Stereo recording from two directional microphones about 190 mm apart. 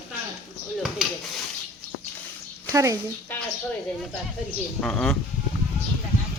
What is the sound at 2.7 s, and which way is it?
Speech, 15° right (ahead or behind).